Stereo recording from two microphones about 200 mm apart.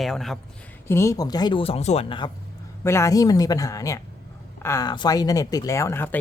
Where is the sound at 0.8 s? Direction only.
15° left (ahead or behind).